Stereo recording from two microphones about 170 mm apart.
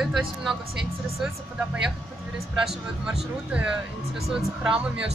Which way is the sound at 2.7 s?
5° right (ahead or behind).